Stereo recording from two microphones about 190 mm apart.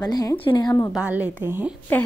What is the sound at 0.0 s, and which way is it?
Speech, 20° left (ahead or behind).